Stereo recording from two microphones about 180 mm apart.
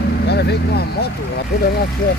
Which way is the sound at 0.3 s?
65° left (ahead or behind).